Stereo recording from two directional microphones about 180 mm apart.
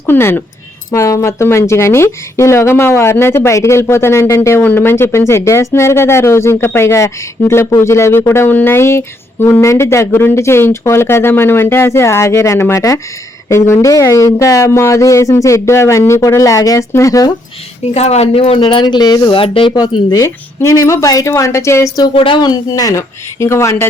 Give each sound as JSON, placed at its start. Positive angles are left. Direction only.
{"t": 0.0, "sound": "speech", "side_deg": 15}
{"t": 17.9, "sound": "speech", "side_deg": 35}
{"t": 22.1, "sound": "speech", "side_deg": 30}